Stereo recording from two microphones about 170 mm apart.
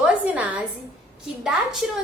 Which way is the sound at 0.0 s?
10° right (ahead or behind).